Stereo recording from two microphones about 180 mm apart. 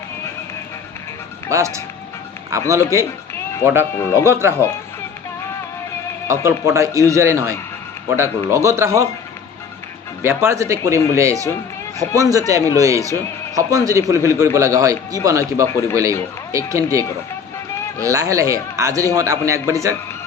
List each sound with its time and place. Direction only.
1.5 s a man's voice: 15° right (ahead or behind)
3.9 s speech: 15° left (ahead or behind)
4.3 s a man's voice: 15° right (ahead or behind)
6.2 s a man's voice: 15° right (ahead or behind)
10.2 s a man's voice: 15° right (ahead or behind)
15.7 s speech: 15° left (ahead or behind)
16.5 s a man's voice: 15° right (ahead or behind)